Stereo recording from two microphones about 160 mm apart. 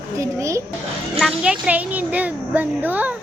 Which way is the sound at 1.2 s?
5° right (ahead or behind).